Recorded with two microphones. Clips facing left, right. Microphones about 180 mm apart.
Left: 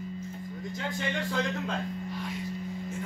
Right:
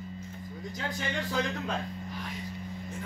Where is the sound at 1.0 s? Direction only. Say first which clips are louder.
Left 1 dB; centre (ahead or behind).